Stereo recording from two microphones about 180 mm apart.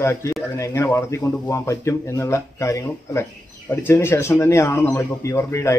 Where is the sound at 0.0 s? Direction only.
15° left (ahead or behind).